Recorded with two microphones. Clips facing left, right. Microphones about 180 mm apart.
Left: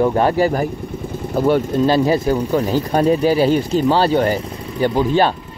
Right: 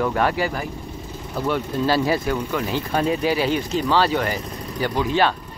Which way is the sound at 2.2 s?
35° left (ahead or behind).